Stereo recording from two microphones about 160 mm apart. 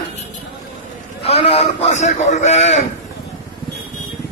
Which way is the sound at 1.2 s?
40° left (ahead or behind).